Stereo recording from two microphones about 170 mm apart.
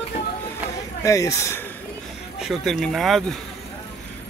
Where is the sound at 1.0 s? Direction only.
20° left (ahead or behind).